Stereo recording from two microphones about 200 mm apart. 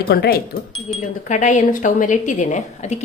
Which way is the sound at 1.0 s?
35° left (ahead or behind).